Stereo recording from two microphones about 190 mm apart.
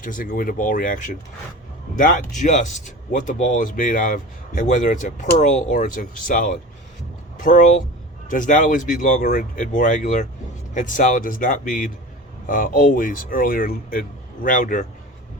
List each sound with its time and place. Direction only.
0.0 s a man's voice: 45° left (ahead or behind)